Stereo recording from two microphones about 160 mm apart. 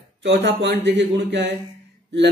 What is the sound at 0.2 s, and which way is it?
Speech, 90° right.